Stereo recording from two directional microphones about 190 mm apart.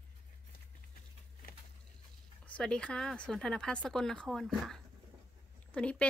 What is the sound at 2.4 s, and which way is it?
Speech, 5° left (ahead or behind).